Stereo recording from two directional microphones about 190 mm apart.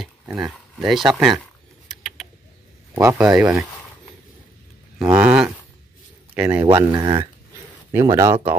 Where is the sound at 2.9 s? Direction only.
15° right (ahead or behind).